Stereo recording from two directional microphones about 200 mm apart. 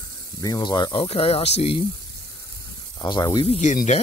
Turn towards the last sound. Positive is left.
turn(degrees=35)  # may be behind; listen again after turning